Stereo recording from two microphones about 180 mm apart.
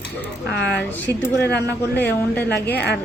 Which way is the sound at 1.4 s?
65° left (ahead or behind).